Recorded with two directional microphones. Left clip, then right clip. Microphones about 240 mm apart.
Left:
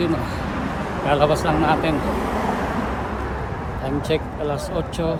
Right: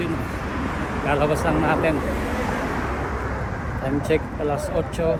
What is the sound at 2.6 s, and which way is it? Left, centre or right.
Vehicle, left.